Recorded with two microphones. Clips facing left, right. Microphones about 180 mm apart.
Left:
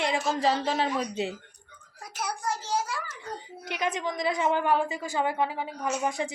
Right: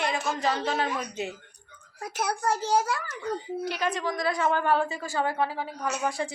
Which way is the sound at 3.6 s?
20° left (ahead or behind).